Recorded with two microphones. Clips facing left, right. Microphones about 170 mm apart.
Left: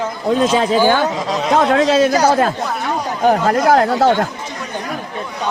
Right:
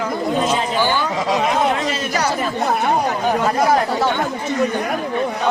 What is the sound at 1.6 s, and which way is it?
Speech, 90° left.